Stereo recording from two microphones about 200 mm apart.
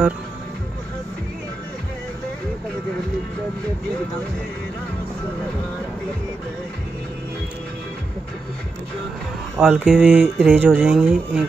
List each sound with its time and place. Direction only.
9.6 s speech: 5° right (ahead or behind)